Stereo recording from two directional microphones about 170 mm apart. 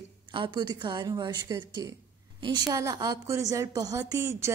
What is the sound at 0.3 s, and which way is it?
A woman's voice, 25° right (ahead or behind).